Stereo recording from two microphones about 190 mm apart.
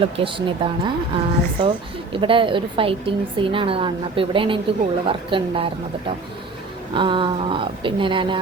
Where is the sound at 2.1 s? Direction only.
25° right (ahead or behind).